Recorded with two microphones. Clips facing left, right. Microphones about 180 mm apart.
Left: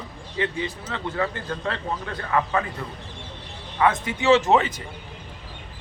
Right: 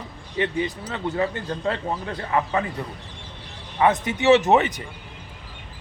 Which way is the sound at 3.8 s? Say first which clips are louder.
Right 2 dB; 20° right (ahead or behind).